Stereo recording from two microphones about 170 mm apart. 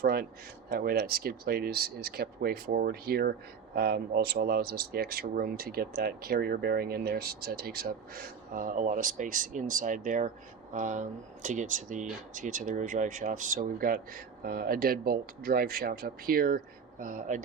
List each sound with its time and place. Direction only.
0.0 s speech: 65° right (ahead or behind)